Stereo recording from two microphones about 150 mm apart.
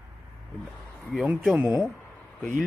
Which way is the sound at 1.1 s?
5° right (ahead or behind).